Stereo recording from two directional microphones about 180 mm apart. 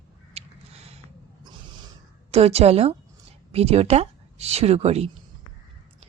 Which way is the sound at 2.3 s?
35° right (ahead or behind).